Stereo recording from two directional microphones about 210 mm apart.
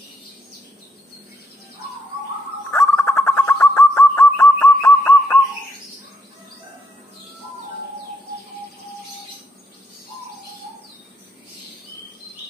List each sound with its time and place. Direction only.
2.7 s bird: 10° left (ahead or behind)